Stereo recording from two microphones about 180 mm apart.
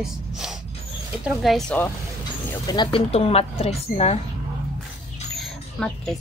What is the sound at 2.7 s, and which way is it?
Speech, 25° left (ahead or behind).